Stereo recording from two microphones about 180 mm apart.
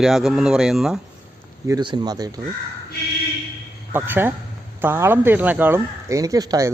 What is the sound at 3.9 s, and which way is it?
Speech, 10° right (ahead or behind).